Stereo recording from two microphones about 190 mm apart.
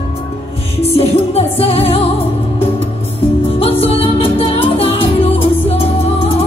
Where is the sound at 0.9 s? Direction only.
30° left (ahead or behind).